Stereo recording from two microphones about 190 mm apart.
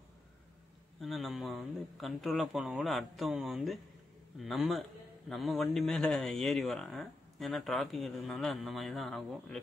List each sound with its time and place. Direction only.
1.0 s speech: centre (ahead or behind)